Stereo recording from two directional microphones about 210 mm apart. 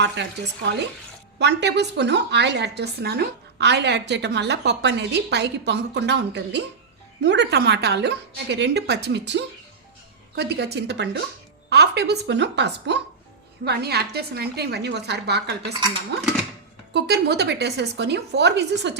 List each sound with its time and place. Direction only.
0.0 s a woman's voice: 55° right (ahead or behind)